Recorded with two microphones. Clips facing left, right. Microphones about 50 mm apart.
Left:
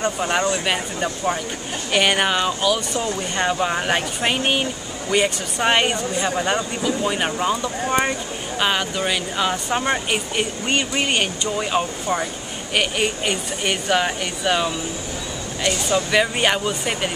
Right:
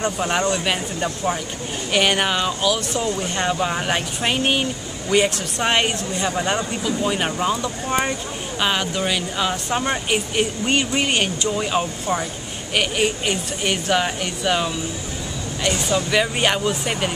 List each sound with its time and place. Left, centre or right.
0.0 s speech: centre
15.9 s speech: centre